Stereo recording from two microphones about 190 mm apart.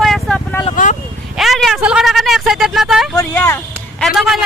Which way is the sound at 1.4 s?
Centre (ahead or behind).